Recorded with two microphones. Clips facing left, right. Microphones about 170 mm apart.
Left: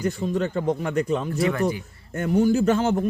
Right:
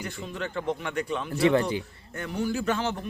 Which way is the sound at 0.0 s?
40° left (ahead or behind).